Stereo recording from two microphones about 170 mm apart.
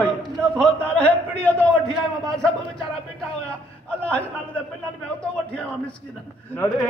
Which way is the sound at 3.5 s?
10° left (ahead or behind).